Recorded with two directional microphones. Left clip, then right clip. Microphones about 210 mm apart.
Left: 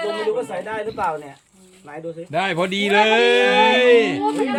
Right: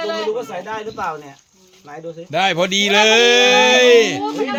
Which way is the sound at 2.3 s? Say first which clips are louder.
Right 5 dB; 40° right (ahead or behind).